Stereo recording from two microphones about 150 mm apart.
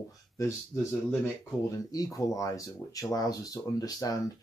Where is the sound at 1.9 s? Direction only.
25° left (ahead or behind).